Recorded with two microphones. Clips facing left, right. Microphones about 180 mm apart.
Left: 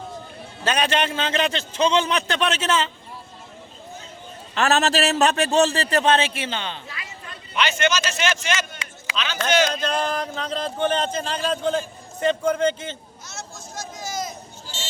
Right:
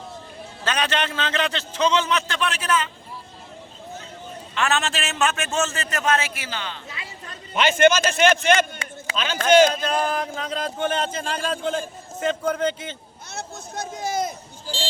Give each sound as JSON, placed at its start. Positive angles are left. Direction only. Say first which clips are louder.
{"t": 0.6, "sound": "a man's voice", "louder": "left 3 dB", "side_deg": 10}
{"t": 4.5, "sound": "a man's voice", "louder": "left 4 dB", "side_deg": 40}
{"t": 7.3, "sound": "a man's voice", "louder": "right 3 dB", "side_deg": -45}
{"t": 9.7, "sound": "speech", "louder": "even", "side_deg": -5}
{"t": 13.2, "sound": "a sound", "louder": "right 4 dB", "side_deg": -60}